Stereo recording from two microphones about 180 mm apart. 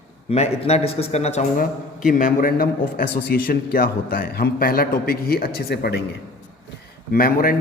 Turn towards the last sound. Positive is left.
turn(degrees=50)  # may be behind; listen again after turning